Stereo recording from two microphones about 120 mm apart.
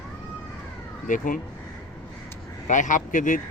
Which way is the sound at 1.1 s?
90° left.